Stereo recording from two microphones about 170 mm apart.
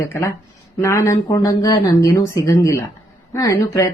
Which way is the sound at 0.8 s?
15° left (ahead or behind).